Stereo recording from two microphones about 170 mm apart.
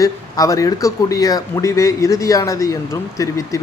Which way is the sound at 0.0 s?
20° left (ahead or behind).